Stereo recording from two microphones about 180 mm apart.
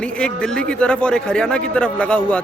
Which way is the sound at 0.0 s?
5° left (ahead or behind).